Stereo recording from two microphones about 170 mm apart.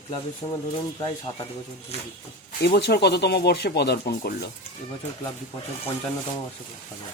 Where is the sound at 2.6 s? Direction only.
70° left (ahead or behind).